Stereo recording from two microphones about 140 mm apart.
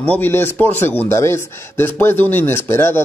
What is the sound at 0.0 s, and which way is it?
Speech, 10° left (ahead or behind).